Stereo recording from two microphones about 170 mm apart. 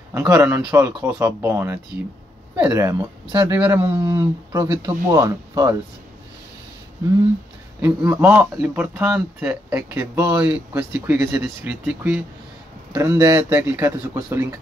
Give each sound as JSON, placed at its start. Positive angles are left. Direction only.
{"t": 0.1, "sound": "speech", "side_deg": -15}
{"t": 7.8, "sound": "speech", "side_deg": -10}